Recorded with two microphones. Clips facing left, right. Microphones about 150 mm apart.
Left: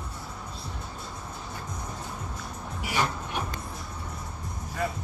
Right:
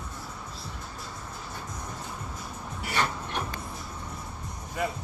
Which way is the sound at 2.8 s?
10° left (ahead or behind).